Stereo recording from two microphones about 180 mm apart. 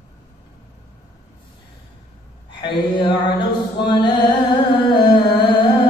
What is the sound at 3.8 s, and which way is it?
Music, 25° left (ahead or behind).